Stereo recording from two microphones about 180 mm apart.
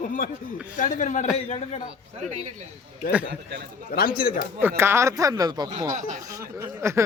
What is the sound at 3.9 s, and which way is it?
Speech, 55° left (ahead or behind).